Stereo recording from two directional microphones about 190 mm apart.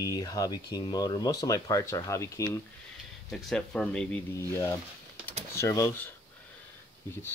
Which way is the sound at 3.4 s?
5° left (ahead or behind).